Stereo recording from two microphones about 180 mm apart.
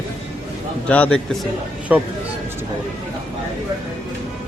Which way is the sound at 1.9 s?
10° right (ahead or behind).